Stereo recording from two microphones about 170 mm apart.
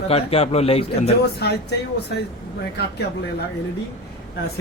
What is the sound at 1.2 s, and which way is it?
Speech, 75° left (ahead or behind).